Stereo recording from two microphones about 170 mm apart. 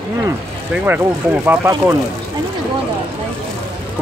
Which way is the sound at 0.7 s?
10° right (ahead or behind).